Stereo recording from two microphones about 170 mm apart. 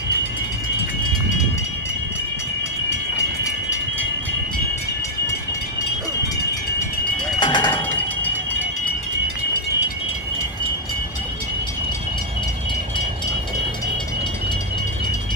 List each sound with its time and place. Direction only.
7.3 s music: 25° left (ahead or behind)